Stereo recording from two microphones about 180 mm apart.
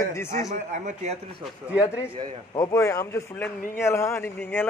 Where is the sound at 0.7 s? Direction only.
40° right (ahead or behind).